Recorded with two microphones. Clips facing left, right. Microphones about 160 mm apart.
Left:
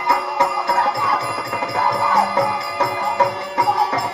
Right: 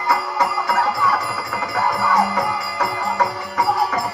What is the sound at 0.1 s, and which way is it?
Music, 30° left (ahead or behind).